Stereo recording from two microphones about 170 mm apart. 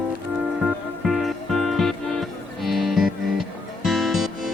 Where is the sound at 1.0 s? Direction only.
Centre (ahead or behind).